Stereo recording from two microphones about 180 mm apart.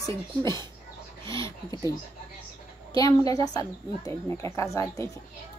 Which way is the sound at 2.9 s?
20° left (ahead or behind).